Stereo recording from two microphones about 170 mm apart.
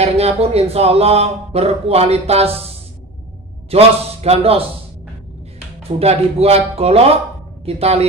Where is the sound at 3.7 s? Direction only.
35° right (ahead or behind).